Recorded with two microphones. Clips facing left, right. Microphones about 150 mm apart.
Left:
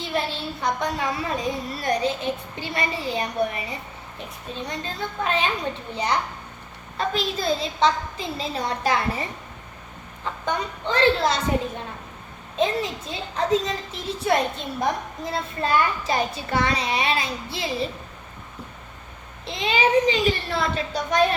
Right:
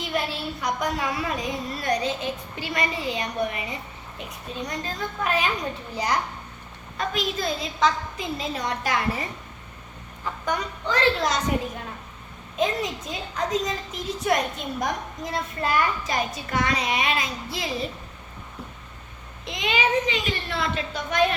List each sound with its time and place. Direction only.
0.0 s a sound: 30° left (ahead or behind)
1.8 s a woman's voice: 30° left (ahead or behind)
10.4 s a woman's voice: 25° left (ahead or behind)
12.5 s a woman's voice: 30° left (ahead or behind)
19.5 s a woman's voice: 30° left (ahead or behind)